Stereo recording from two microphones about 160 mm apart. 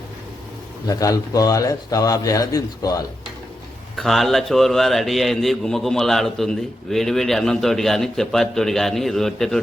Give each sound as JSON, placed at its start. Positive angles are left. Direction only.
{"t": 0.9, "sound": "a man's voice", "side_deg": 20}
{"t": 3.9, "sound": "a man's voice", "side_deg": 0}